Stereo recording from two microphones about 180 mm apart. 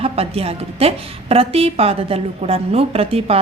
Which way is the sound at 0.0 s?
35° right (ahead or behind).